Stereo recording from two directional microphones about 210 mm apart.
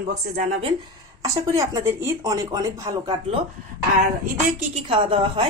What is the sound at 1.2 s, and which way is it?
Speech, 15° right (ahead or behind).